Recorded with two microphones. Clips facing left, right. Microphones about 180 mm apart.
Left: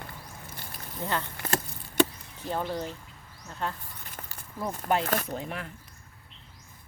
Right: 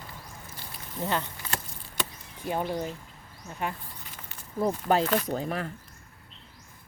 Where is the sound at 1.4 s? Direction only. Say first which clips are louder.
Left 5 dB; 50° left (ahead or behind).